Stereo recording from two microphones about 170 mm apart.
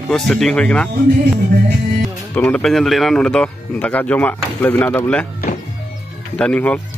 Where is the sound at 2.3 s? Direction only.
5° left (ahead or behind).